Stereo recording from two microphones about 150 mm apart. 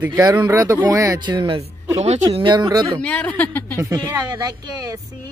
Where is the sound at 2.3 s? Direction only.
35° right (ahead or behind).